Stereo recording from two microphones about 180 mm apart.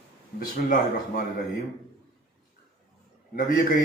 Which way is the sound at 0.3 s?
50° left (ahead or behind).